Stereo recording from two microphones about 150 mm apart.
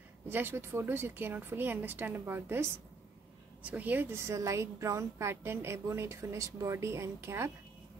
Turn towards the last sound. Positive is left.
turn(degrees=-15)  # may be behind; listen again after turning